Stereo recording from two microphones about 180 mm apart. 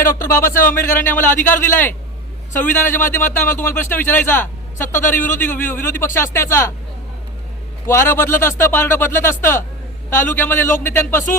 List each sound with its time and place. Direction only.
0.2 s a man's voice: 15° left (ahead or behind)
7.9 s a man's voice: 15° left (ahead or behind)